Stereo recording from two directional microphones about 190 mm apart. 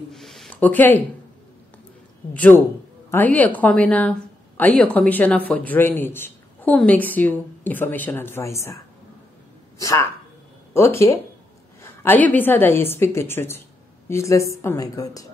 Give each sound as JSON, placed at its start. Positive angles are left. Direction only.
{"t": 0.1, "sound": "speech", "side_deg": 0}
{"t": 2.3, "sound": "a woman's voice", "side_deg": 10}
{"t": 9.8, "sound": "a woman's voice", "side_deg": 15}